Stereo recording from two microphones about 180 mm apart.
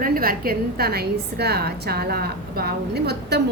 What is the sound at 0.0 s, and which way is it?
A woman's voice, 55° right (ahead or behind).